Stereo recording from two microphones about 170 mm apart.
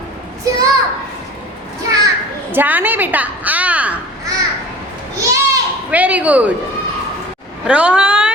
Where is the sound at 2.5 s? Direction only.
10° right (ahead or behind).